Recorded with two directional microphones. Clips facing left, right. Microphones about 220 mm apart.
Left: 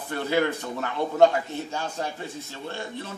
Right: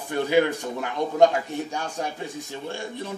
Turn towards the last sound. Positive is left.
turn(degrees=-15)  # may be behind; listen again after turning